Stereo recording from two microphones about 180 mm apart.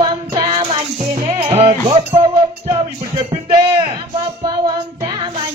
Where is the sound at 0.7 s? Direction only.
35° right (ahead or behind).